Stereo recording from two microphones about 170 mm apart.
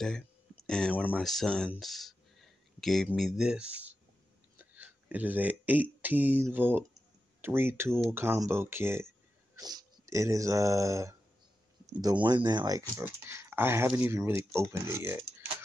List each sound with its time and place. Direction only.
0.7 s speech: 5° left (ahead or behind); by 15.2 s 15° right (ahead or behind)